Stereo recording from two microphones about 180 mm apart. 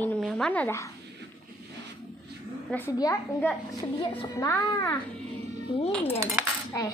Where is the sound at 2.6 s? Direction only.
10° left (ahead or behind).